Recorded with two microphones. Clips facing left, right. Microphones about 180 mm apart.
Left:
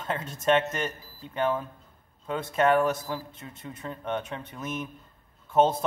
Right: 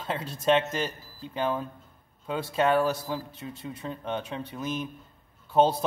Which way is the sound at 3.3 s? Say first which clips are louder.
Right 4 dB; 30° right (ahead or behind).